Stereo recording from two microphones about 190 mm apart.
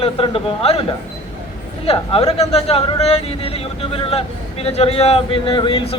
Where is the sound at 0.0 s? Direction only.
30° left (ahead or behind).